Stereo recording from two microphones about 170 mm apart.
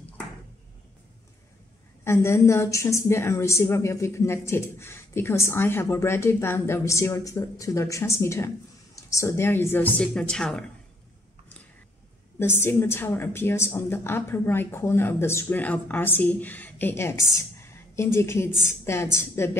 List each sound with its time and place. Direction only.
2.0 s a woman's voice: 15° left (ahead or behind)
12.4 s a woman's voice: 15° left (ahead or behind)